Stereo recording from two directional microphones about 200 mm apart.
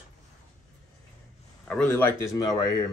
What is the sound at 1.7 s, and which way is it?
Speech, 10° left (ahead or behind).